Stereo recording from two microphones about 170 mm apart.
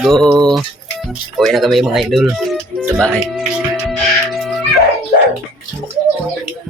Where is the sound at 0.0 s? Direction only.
Centre (ahead or behind).